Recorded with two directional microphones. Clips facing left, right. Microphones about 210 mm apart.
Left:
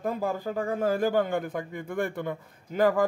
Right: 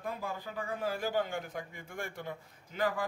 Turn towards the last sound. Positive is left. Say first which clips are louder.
# left 10 dB
turn(degrees=50)  # may be behind; listen again after turning